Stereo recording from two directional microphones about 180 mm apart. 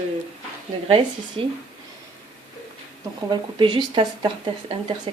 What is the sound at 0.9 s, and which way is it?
Speech, 30° right (ahead or behind).